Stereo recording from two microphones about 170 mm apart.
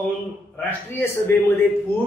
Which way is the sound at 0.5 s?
15° left (ahead or behind).